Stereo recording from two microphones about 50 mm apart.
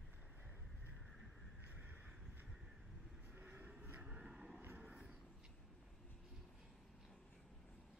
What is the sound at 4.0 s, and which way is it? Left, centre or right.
Vehicle, centre.